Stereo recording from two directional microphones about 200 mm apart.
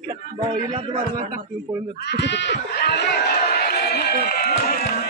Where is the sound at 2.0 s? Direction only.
55° left (ahead or behind).